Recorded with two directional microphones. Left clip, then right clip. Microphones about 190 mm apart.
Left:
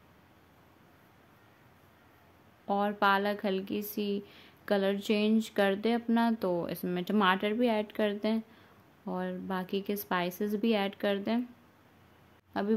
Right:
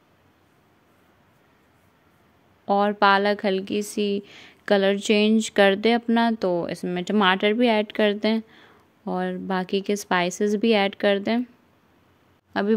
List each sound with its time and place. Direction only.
2.6 s speech: 40° right (ahead or behind)
12.5 s speech: 40° right (ahead or behind)